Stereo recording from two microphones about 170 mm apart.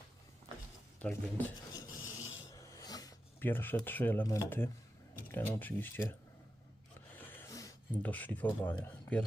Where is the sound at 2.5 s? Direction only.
20° left (ahead or behind).